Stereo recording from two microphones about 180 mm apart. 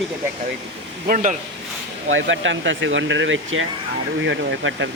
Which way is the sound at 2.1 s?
90° right.